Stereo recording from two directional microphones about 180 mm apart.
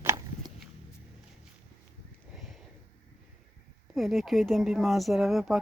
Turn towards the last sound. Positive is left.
turn(degrees=0)  # may be behind; listen again after turning